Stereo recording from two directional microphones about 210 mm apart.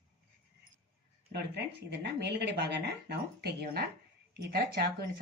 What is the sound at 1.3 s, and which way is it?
Speech, 50° right (ahead or behind).